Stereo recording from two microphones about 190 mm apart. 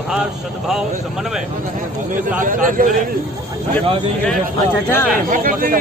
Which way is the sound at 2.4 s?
45° right (ahead or behind).